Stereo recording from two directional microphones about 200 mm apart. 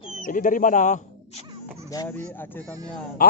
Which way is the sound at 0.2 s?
40° left (ahead or behind).